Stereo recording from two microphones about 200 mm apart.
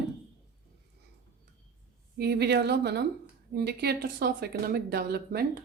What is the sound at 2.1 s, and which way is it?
A woman's voice, 55° right (ahead or behind).